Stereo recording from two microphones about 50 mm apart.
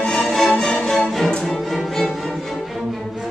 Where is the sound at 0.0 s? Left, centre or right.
Centre.